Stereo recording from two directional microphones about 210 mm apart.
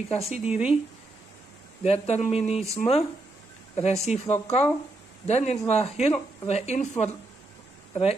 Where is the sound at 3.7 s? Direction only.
30° left (ahead or behind).